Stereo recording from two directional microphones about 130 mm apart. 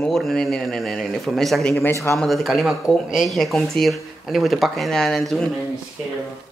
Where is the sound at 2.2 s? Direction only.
Centre (ahead or behind).